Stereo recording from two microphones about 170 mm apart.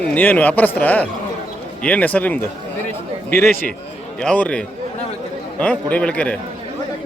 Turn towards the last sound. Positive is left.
turn(degrees=5)  # may be behind; listen again after turning